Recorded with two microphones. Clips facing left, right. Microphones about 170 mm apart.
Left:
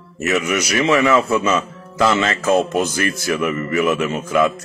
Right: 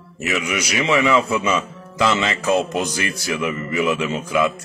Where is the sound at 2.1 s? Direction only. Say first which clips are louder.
Left 3 dB; 10° right (ahead or behind).